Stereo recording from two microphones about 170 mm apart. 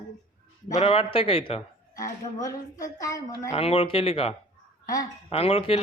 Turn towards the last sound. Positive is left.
turn(degrees=35)  # may be behind; listen again after turning